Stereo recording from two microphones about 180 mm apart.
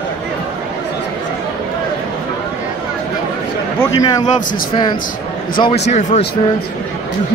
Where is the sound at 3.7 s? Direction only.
20° left (ahead or behind).